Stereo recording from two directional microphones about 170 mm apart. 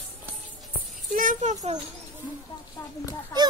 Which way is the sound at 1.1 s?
50° right (ahead or behind).